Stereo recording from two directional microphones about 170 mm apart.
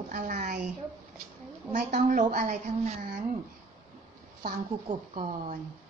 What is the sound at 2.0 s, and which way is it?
A woman's voice, 50° right (ahead or behind).